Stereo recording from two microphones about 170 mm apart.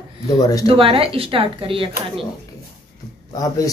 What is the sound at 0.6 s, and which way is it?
A woman's voice, 30° right (ahead or behind).